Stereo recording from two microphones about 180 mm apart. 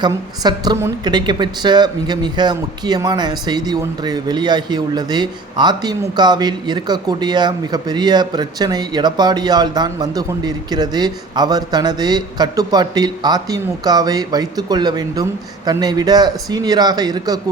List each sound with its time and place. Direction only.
0.0 s a woman's voice: 25° right (ahead or behind)